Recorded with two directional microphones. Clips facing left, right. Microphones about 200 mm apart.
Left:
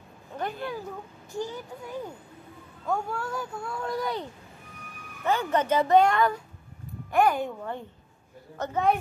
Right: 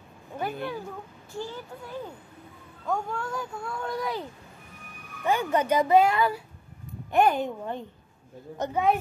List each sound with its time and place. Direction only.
0.4 s speech: 5° right (ahead or behind)
1.4 s speech: 15° left (ahead or behind)
2.9 s speech: 5° left (ahead or behind)
5.2 s speech: 15° right (ahead or behind)
7.1 s speech: 20° right (ahead or behind)